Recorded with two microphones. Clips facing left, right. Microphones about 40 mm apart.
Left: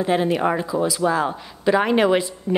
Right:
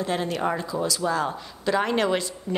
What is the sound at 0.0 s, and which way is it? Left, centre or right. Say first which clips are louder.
A woman's voice: left 6 dB; centre.